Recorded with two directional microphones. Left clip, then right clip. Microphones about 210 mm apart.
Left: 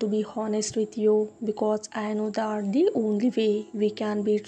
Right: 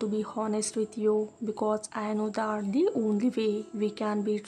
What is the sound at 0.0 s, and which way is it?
Speech, 5° left (ahead or behind).